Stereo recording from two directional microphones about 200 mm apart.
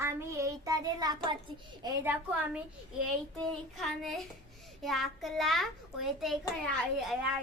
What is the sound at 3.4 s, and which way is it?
A child's voice, centre (ahead or behind).